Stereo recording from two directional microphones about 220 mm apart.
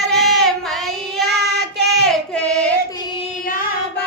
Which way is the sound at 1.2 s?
50° right (ahead or behind).